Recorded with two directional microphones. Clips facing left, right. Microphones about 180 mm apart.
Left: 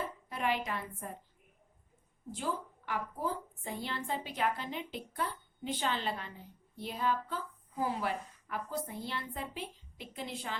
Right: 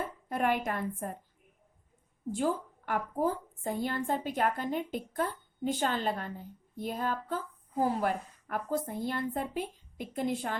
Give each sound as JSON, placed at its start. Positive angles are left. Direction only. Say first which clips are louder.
{"t": 0.0, "sound": "a woman's voice", "louder": "right 5 dB", "side_deg": -50}
{"t": 2.3, "sound": "a woman's voice", "louder": "right 7 dB", "side_deg": -50}